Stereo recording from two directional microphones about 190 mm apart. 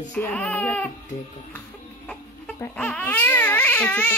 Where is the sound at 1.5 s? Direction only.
5° left (ahead or behind).